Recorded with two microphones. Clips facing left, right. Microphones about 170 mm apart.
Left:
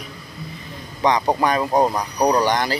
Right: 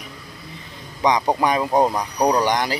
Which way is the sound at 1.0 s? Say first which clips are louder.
Even; 15° right (ahead or behind).